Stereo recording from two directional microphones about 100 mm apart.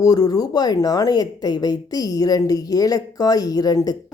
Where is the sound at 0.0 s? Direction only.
40° left (ahead or behind).